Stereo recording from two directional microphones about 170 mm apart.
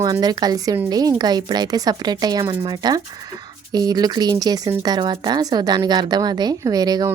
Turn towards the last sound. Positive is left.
turn(degrees=-20)  # may be behind; listen again after turning